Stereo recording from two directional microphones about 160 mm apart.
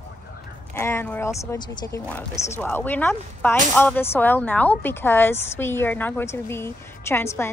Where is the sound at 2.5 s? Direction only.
10° left (ahead or behind).